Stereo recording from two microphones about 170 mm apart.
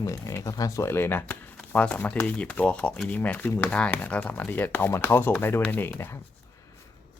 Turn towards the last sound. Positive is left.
turn(degrees=15)  # may be behind; listen again after turning